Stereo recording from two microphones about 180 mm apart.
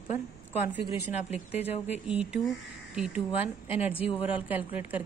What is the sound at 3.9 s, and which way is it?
Speech, 30° left (ahead or behind).